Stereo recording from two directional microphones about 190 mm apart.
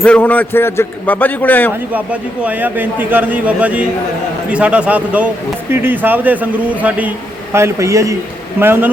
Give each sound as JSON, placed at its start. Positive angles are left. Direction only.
{"t": 0.0, "sound": "a man's voice", "side_deg": 5}
{"t": 2.4, "sound": "a man's voice", "side_deg": -10}